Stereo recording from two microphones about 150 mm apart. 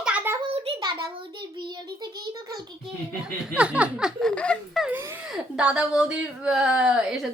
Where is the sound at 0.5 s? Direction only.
35° right (ahead or behind).